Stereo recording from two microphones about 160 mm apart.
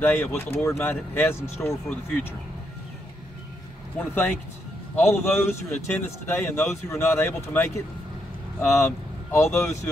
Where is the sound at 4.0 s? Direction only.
10° left (ahead or behind).